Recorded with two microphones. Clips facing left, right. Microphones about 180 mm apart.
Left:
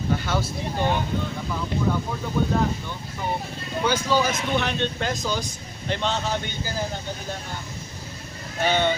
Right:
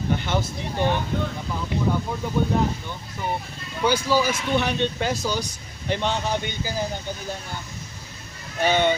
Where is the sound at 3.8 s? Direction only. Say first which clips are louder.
Right 2 dB; 10° right (ahead or behind).